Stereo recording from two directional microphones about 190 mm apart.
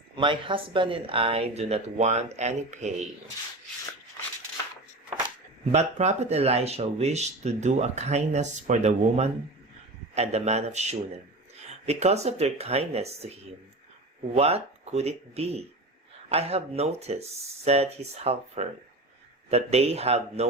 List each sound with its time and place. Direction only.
0.2 s speech: 25° right (ahead or behind)
5.7 s speech: 35° right (ahead or behind)